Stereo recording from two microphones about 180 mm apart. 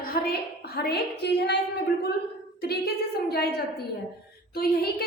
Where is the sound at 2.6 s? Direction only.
60° left (ahead or behind).